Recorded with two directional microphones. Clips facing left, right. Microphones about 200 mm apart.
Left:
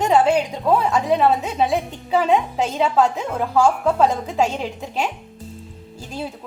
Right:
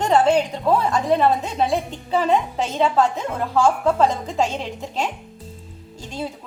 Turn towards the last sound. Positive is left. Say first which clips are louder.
# even
turn(degrees=5)  # may be behind; listen again after turning